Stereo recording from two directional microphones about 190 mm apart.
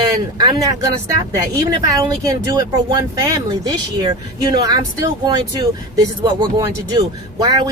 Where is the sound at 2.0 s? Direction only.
15° right (ahead or behind).